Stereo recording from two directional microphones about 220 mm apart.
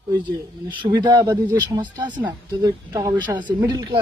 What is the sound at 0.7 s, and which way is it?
Speech, 20° right (ahead or behind).